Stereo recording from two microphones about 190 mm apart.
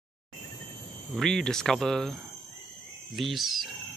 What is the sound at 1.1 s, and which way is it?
Speech, centre (ahead or behind).